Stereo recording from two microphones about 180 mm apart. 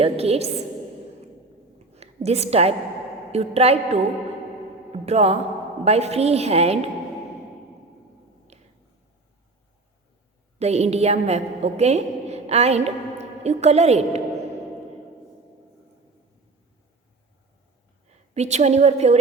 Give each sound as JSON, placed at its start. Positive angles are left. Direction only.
{"t": 0.0, "sound": "a woman's voice", "side_deg": -35}
{"t": 2.0, "sound": "a woman's voice", "side_deg": -35}
{"t": 4.9, "sound": "mantra", "side_deg": -35}
{"t": 5.8, "sound": "a woman's voice", "side_deg": -35}
{"t": 8.5, "sound": "finger snapping", "side_deg": -40}
{"t": 10.6, "sound": "a woman's voice", "side_deg": -35}
{"t": 18.3, "sound": "a woman's voice", "side_deg": -40}